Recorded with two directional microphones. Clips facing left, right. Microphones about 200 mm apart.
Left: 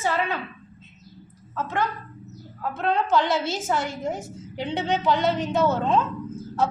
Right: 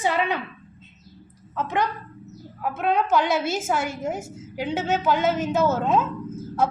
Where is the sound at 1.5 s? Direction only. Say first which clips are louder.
Right 2 dB; 15° right (ahead or behind).